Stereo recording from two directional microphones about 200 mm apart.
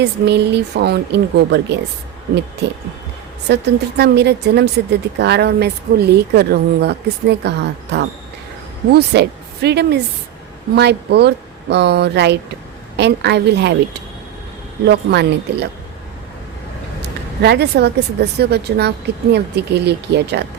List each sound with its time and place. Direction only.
0.0 s speech: 55° right (ahead or behind)
3.5 s speech: 55° right (ahead or behind)
8.9 s speech: 55° right (ahead or behind)
14.8 s speech: 55° right (ahead or behind)
17.0 s speech: 55° right (ahead or behind)